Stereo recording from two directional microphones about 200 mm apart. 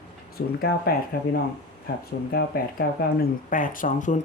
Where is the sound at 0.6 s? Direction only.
50° left (ahead or behind).